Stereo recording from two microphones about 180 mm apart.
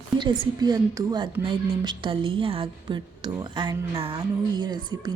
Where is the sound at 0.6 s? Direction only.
20° right (ahead or behind).